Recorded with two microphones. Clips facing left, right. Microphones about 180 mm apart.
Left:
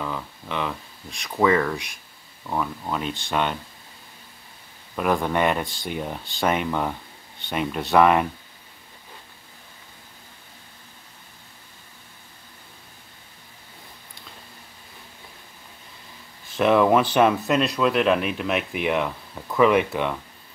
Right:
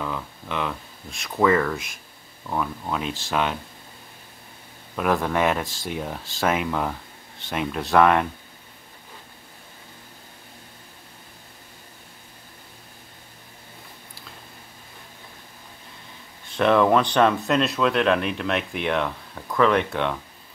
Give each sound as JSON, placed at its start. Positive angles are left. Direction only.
{"t": 0.0, "sound": "speech", "side_deg": 0}
{"t": 4.9, "sound": "speech", "side_deg": 0}
{"t": 16.4, "sound": "speech", "side_deg": 5}